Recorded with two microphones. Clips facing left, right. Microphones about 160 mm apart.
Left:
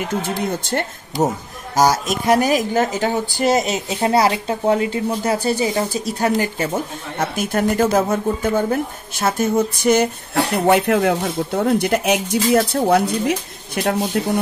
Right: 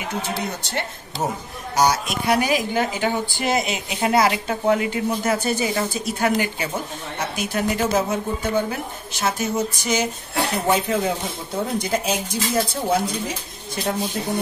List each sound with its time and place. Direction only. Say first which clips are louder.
0.2 s speech: left 5 dB; 50° left (ahead or behind)
7.2 s speech: left 5 dB; 50° left (ahead or behind)
10.7 s speech: left 6 dB; 70° left (ahead or behind)